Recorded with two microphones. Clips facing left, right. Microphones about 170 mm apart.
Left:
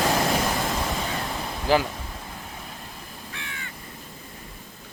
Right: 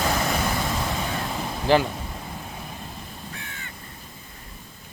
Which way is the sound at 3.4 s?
45° right (ahead or behind).